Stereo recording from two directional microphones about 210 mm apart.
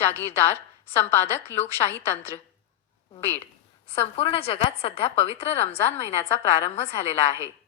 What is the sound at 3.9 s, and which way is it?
A woman's voice, 25° left (ahead or behind).